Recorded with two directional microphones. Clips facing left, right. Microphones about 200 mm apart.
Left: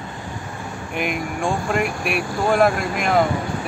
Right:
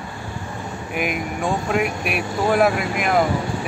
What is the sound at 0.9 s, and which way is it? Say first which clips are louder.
Speech: even; centre (ahead or behind).